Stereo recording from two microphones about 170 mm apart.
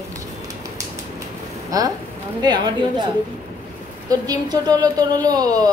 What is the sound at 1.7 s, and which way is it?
A woman's voice, 20° right (ahead or behind).